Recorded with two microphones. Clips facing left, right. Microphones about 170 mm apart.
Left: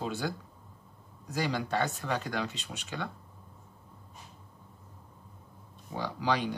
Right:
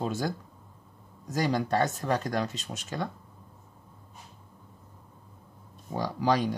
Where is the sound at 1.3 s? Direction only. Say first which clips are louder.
Right 4 dB; 40° right (ahead or behind).